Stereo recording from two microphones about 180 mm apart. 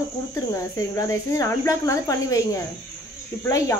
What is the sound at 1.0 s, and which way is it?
Speech, 20° left (ahead or behind).